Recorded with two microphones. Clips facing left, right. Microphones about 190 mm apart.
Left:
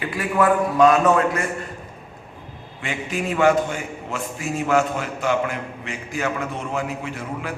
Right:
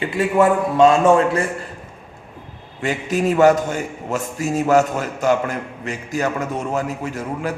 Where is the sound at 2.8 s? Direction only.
40° right (ahead or behind).